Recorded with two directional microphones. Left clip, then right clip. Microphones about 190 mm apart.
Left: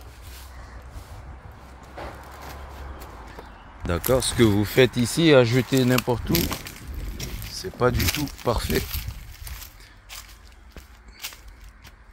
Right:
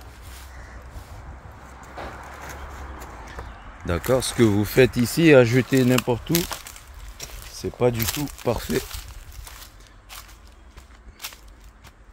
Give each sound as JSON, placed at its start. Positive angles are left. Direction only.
{"t": 3.8, "sound": "speech", "side_deg": 0}
{"t": 4.6, "sound": "speech", "side_deg": -20}
{"t": 5.9, "sound": "speech", "side_deg": -5}
{"t": 10.1, "sound": "a sound", "side_deg": 0}